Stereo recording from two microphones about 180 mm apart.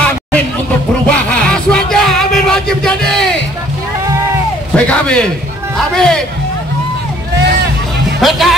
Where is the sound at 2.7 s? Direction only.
5° left (ahead or behind).